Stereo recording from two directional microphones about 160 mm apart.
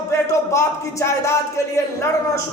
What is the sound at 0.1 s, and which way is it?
Speech, 15° left (ahead or behind).